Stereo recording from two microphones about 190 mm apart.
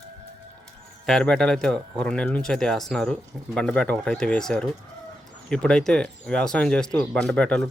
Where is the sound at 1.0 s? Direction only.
5° left (ahead or behind).